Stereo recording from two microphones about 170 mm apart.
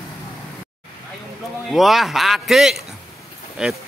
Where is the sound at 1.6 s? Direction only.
Centre (ahead or behind).